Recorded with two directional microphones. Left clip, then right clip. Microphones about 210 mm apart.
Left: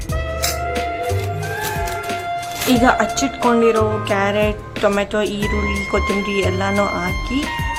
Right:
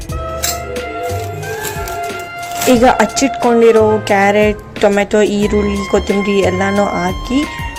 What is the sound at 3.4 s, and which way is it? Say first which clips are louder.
Speech: right 4 dB; centre (ahead or behind).